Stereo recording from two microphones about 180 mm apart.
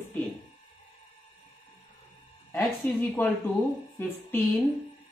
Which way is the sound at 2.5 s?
10° left (ahead or behind).